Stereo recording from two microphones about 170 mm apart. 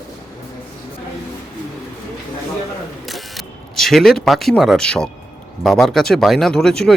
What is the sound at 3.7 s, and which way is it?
Speech, centre (ahead or behind).